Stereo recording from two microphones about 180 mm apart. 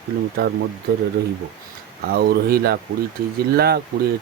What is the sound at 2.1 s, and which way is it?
Speech, 60° right (ahead or behind).